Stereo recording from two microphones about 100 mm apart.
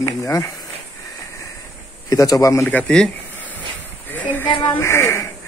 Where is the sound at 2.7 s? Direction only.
15° left (ahead or behind).